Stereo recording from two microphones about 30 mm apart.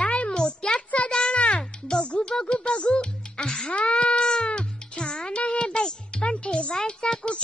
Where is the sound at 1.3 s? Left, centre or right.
Left.